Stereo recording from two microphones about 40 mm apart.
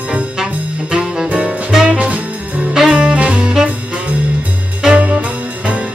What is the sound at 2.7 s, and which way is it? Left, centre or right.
Music, right.